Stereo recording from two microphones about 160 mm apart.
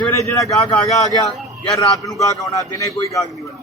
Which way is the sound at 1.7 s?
20° left (ahead or behind).